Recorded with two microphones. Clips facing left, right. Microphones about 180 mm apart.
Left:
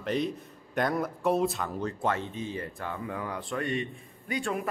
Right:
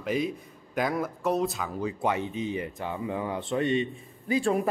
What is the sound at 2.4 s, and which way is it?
A man's voice, 20° right (ahead or behind).